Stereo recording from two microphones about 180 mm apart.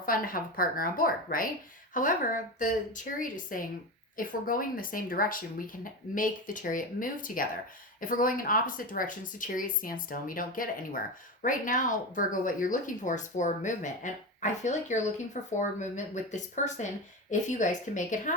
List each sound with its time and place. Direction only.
0.0 s speech: 50° left (ahead or behind)